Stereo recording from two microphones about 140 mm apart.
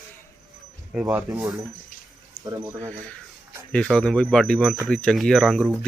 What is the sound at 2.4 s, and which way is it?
Speech, 20° right (ahead or behind).